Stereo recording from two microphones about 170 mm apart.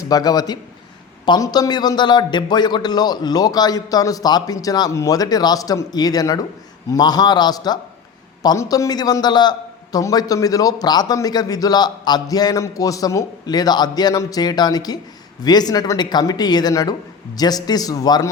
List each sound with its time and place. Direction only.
0.0 s a man's voice: 20° left (ahead or behind)